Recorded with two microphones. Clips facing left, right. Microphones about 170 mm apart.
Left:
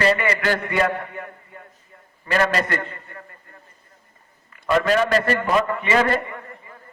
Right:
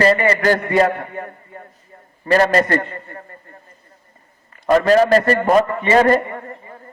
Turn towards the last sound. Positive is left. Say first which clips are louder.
# right 6 dB
turn(degrees=-40)  # may be behind; listen again after turning